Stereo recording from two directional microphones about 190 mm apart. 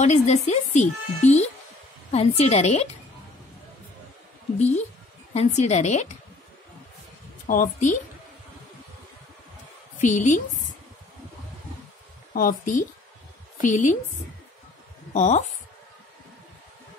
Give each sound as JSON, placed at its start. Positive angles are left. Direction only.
{"t": 0.0, "sound": "speech", "side_deg": 35}
{"t": 4.6, "sound": "speech", "side_deg": 35}
{"t": 7.4, "sound": "a woman's voice", "side_deg": 45}
{"t": 9.9, "sound": "speech", "side_deg": 40}
{"t": 12.4, "sound": "a woman's voice", "side_deg": 45}
{"t": 15.1, "sound": "speech", "side_deg": 40}